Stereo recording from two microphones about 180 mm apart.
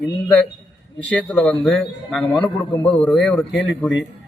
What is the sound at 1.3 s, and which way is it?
A man's voice, 5° left (ahead or behind).